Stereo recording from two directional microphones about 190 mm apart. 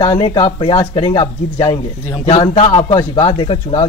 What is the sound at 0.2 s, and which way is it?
Speech, 30° left (ahead or behind).